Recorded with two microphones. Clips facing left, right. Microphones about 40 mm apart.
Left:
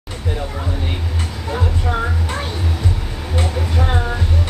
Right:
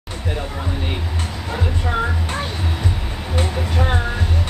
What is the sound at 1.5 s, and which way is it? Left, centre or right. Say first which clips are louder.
Music: left 2 dB; centre.